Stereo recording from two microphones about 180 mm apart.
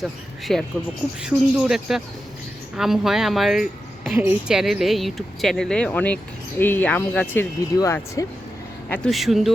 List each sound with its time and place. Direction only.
0.0 s speech: centre (ahead or behind); by 8.3 s 15° left (ahead or behind)
9.0 s speech: centre (ahead or behind)